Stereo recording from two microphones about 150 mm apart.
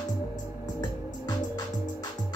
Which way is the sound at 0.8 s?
25° left (ahead or behind).